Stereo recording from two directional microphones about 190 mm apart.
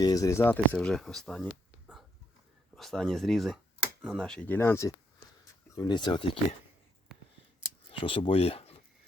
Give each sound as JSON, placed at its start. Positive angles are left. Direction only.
{"t": 0.0, "sound": "speech", "side_deg": 20}
{"t": 7.9, "sound": "speech", "side_deg": 25}